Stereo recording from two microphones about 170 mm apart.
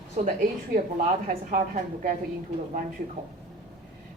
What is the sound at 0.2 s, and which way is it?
A woman's voice, 50° right (ahead or behind).